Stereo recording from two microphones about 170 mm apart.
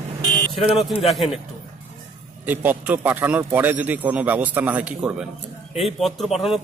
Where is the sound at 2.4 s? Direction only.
10° right (ahead or behind).